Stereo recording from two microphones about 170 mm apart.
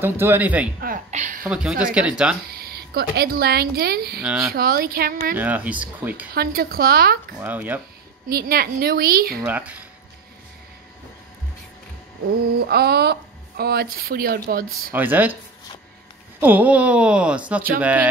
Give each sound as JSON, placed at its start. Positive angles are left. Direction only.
{"t": 0.0, "sound": "speech", "side_deg": -10}
{"t": 0.7, "sound": "a sound", "side_deg": -55}
{"t": 1.1, "sound": "a sound", "side_deg": -45}
{"t": 1.4, "sound": "speech", "side_deg": -5}
{"t": 2.6, "sound": "speech", "side_deg": -65}
{"t": 5.4, "sound": "speech", "side_deg": -10}
{"t": 6.3, "sound": "speech", "side_deg": -65}
{"t": 7.4, "sound": "speech", "side_deg": -10}
{"t": 8.3, "sound": "speech", "side_deg": -65}
{"t": 9.4, "sound": "speech", "side_deg": -10}
{"t": 12.5, "sound": "speech", "side_deg": -70}
{"t": 14.9, "sound": "speech", "side_deg": -10}
{"t": 16.3, "sound": "speech", "side_deg": -10}